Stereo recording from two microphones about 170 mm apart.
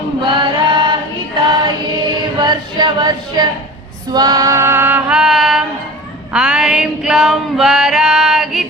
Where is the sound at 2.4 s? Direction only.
25° right (ahead or behind).